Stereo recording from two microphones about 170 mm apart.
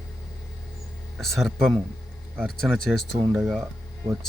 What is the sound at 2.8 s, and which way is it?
Speech, 80° left.